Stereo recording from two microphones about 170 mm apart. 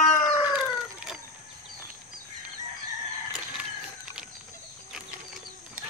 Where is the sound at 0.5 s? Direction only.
5° right (ahead or behind).